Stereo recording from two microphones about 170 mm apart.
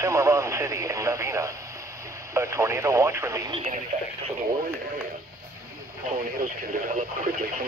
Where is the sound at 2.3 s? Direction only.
15° right (ahead or behind).